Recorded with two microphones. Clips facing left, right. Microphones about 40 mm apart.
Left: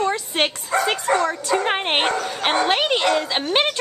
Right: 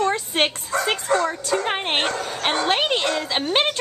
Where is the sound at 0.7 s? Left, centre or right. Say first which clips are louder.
Left 6 dB; left.